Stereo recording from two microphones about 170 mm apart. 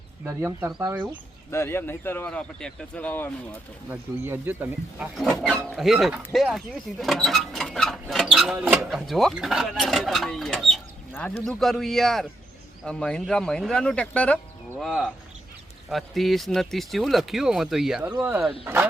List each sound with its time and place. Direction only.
0.3 s speech: 10° right (ahead or behind)
1.5 s speech: 15° left (ahead or behind)
3.8 s speech: 15° right (ahead or behind)
5.1 s speech: centre (ahead or behind)